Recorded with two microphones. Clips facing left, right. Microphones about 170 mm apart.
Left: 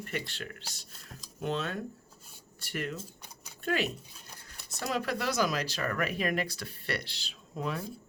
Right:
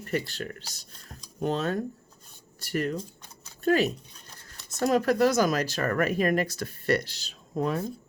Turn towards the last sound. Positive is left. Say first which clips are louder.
# right 7 dB
turn(degrees=-45)  # may be behind; listen again after turning